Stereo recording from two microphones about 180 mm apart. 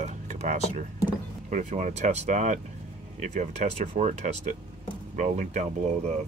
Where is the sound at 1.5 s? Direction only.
40° right (ahead or behind).